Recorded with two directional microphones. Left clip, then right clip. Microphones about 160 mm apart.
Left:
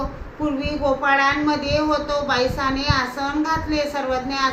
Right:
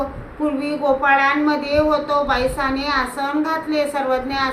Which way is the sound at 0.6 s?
20° right (ahead or behind).